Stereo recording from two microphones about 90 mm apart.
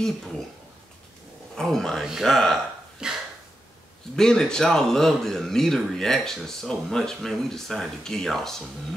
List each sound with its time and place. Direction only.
1.5 s speech: 5° left (ahead or behind)
3.0 s a sound: 10° right (ahead or behind)
4.2 s speech: 10° left (ahead or behind)